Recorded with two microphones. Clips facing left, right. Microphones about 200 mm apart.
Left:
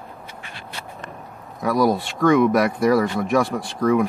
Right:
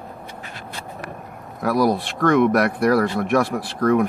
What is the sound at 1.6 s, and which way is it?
Speech, centre (ahead or behind).